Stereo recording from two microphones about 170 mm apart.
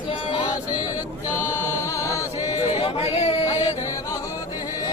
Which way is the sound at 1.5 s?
15° left (ahead or behind).